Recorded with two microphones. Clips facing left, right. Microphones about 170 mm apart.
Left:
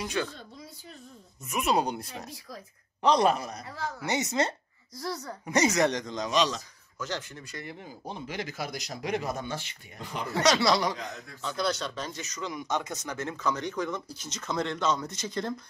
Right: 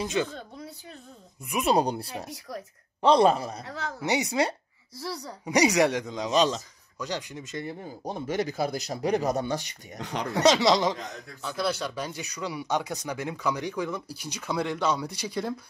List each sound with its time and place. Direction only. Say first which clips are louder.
0.0 s speech: right 4 dB; 25° right (ahead or behind)
1.6 s speech: right 3 dB; 35° right (ahead or behind)
2.3 s speech: right 6 dB; 70° right (ahead or behind)
3.0 s speech: right 4 dB; 30° right (ahead or behind)
3.6 s speech: right 1 dB; 75° right (ahead or behind)
4.0 s speech: right 3 dB; 15° right (ahead or behind)
6.3 s speech: right 4 dB; 35° right (ahead or behind)
7.0 s speech: right 2 dB; 15° right (ahead or behind)
7.8 s speech: right 5 dB; 45° right (ahead or behind)
9.9 s speech: right 4 dB; 80° right
10.4 s speech: right 3 dB; 20° right (ahead or behind)
11.4 s speech: right 1 dB; 5° right (ahead or behind)